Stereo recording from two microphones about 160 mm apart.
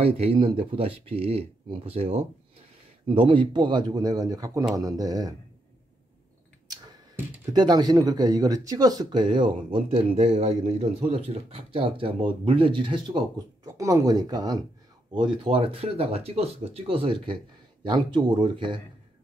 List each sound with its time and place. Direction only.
0.0 s speech: 40° right (ahead or behind)
7.5 s speech: 25° right (ahead or behind)